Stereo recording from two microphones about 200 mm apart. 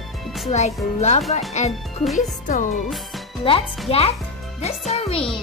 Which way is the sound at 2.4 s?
40° left (ahead or behind).